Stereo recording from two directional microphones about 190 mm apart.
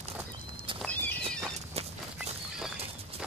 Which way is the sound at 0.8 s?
10° left (ahead or behind).